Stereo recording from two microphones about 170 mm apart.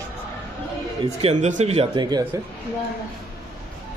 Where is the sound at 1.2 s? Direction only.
40° right (ahead or behind).